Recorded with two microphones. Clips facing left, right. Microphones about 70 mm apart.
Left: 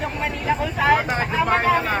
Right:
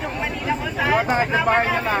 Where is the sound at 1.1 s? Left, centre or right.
Centre.